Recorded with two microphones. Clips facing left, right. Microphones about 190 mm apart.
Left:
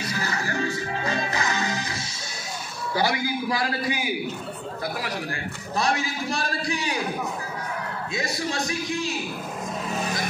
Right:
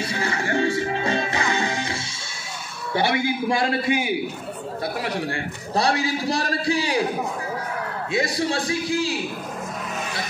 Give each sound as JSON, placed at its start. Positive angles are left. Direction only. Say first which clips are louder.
{"t": 0.0, "sound": "music", "louder": "right 3 dB", "side_deg": -30}
{"t": 2.9, "sound": "a man's voice", "louder": "right 3 dB", "side_deg": -25}
{"t": 5.0, "sound": "a man's voice", "louder": "right 4 dB", "side_deg": -30}
{"t": 8.1, "sound": "a man's voice", "louder": "right 6 dB", "side_deg": -30}